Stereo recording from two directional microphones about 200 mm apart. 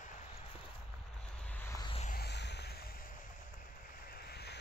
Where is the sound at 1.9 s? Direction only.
35° left (ahead or behind).